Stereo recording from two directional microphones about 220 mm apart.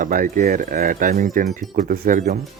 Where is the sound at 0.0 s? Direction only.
40° right (ahead or behind).